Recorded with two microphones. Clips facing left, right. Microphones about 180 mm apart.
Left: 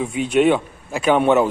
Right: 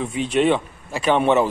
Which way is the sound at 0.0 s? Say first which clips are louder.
Left 3 dB; centre (ahead or behind).